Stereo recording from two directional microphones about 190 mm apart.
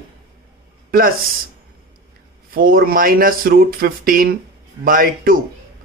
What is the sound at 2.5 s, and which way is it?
Speech, 50° right (ahead or behind).